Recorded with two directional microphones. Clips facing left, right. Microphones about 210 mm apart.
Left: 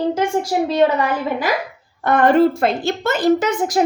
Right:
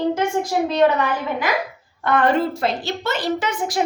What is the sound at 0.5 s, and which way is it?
Speech, 30° left (ahead or behind).